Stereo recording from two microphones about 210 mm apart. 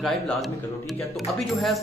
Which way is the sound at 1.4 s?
Centre (ahead or behind).